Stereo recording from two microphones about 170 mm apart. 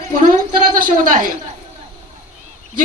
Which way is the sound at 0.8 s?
55° right (ahead or behind).